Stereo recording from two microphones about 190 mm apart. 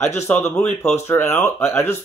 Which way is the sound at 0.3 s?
10° left (ahead or behind).